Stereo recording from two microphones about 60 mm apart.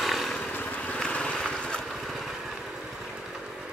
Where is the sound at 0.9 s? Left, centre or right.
Centre.